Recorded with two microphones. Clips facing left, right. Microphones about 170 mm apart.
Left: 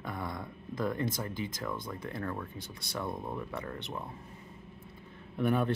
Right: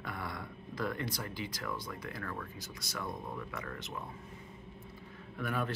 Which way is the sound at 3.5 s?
30° left (ahead or behind).